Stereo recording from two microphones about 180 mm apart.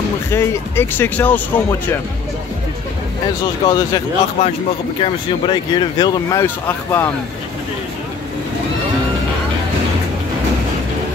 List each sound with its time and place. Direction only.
0.3 s speech: 15° left (ahead or behind)
3.6 s speech: 20° left (ahead or behind)
4.4 s a man's voice: 35° left (ahead or behind)
6.4 s speech: 15° left (ahead or behind)